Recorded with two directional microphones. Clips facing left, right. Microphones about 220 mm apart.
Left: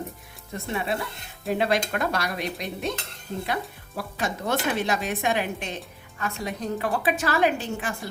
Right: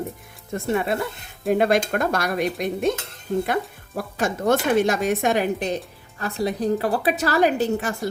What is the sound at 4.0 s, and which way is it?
A woman's voice, 50° right (ahead or behind).